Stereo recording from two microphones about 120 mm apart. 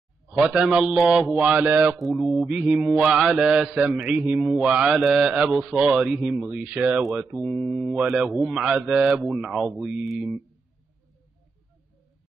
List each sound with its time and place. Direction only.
0.3 s a man's voice: 5° right (ahead or behind)
1.7 s mantra: 15° right (ahead or behind)
2.0 s mantra: centre (ahead or behind)